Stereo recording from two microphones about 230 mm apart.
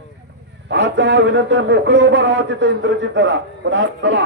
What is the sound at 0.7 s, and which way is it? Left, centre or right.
A man's voice, right.